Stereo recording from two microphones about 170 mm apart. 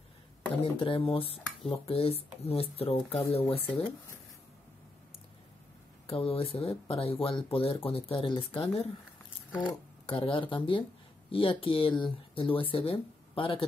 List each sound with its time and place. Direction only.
0.6 s speech: 30° left (ahead or behind)
6.0 s speech: 35° left (ahead or behind)
10.0 s speech: 35° left (ahead or behind)